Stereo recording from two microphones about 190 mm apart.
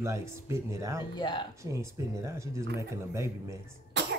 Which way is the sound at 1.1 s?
25° left (ahead or behind).